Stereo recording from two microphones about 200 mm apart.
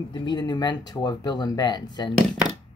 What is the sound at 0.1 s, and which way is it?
Speech, 20° left (ahead or behind).